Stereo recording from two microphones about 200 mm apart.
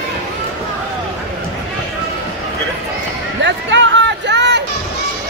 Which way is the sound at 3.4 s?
65° right (ahead or behind).